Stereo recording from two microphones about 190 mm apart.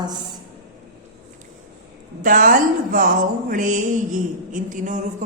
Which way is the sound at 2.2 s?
45° right (ahead or behind).